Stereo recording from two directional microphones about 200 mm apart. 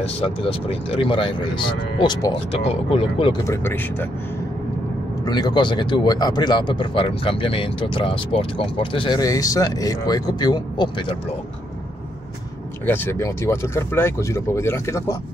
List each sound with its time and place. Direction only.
0.0 s speech: 25° left (ahead or behind)
2.5 s speech: 30° left (ahead or behind)
3.4 s speech: 15° left (ahead or behind)
5.2 s speech: 20° left (ahead or behind)
12.8 s speech: 10° left (ahead or behind)